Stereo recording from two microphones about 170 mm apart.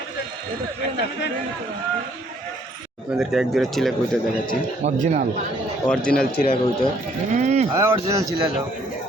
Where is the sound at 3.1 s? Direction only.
5° right (ahead or behind).